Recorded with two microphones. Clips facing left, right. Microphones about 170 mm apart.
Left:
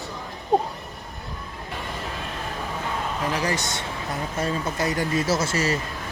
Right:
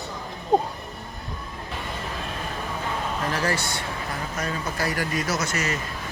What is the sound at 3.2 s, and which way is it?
Speech, 15° left (ahead or behind).